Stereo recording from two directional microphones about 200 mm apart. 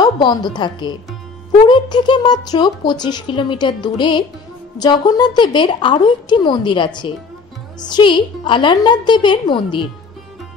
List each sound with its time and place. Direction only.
0.0 s a woman's voice: 20° left (ahead or behind)